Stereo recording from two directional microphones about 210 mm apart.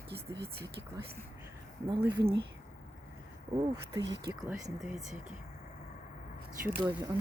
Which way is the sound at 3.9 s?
20° right (ahead or behind).